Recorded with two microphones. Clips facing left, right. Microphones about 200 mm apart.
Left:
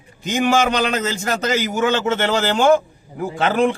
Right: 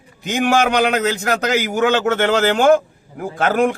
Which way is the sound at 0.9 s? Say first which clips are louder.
Right 3 dB; 65° right (ahead or behind).